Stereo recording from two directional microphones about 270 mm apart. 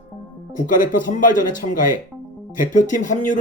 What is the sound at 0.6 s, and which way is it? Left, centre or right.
Speech, left.